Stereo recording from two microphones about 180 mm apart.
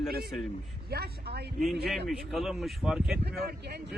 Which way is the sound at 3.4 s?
65° right (ahead or behind).